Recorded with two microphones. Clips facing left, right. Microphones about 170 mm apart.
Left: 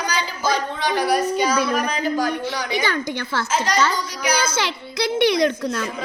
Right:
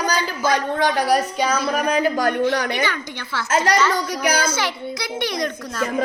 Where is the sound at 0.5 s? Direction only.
55° right (ahead or behind).